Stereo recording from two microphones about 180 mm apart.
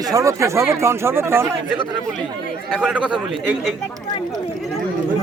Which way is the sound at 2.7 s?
Centre (ahead or behind).